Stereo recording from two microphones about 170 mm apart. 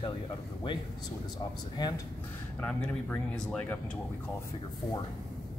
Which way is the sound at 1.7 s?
25° left (ahead or behind).